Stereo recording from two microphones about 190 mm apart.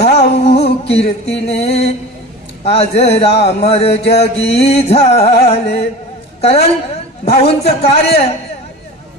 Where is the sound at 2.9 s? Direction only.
60° left (ahead or behind).